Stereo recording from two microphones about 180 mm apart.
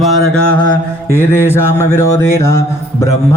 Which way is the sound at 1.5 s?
15° left (ahead or behind).